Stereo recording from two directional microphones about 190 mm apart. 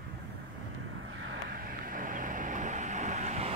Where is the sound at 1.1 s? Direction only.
75° right (ahead or behind).